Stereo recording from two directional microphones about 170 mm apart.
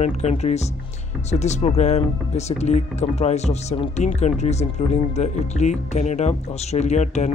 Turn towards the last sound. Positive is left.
turn(degrees=45)  # may be behind; listen again after turning